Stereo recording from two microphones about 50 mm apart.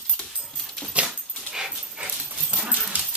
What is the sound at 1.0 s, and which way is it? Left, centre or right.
Dog, centre.